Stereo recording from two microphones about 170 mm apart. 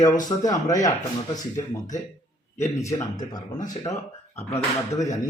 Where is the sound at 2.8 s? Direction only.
20° left (ahead or behind).